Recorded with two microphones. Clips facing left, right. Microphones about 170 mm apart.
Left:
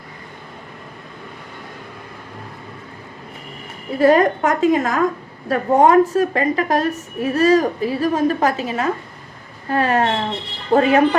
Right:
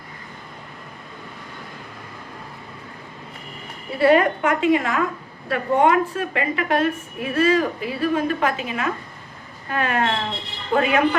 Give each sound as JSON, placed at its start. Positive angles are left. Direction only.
{"t": 3.9, "sound": "a woman's voice", "side_deg": 40}